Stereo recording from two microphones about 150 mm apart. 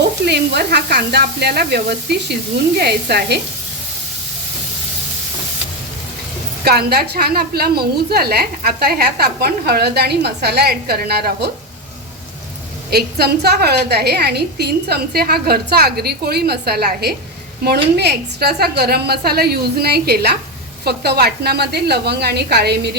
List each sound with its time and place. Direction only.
0.3 s a woman's voice: 90° right
6.7 s a woman's voice: 90° right
12.9 s a woman's voice: 90° right